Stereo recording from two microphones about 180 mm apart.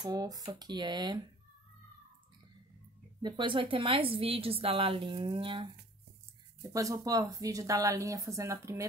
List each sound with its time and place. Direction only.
0.0 s a woman's voice: 20° right (ahead or behind)
3.2 s a woman's voice: 25° right (ahead or behind)
6.7 s speech: 20° right (ahead or behind)